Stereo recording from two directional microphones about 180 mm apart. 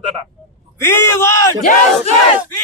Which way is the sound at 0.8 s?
15° left (ahead or behind).